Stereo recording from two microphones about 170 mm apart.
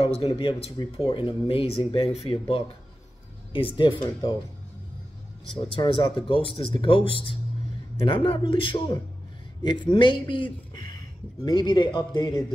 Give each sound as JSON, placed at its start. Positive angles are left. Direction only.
{"t": 0.0, "sound": "speech", "side_deg": 35}
{"t": 5.8, "sound": "speech", "side_deg": 25}